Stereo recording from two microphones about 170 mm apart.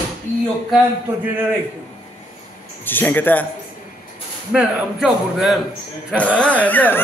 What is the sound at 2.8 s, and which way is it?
Speech, 10° left (ahead or behind).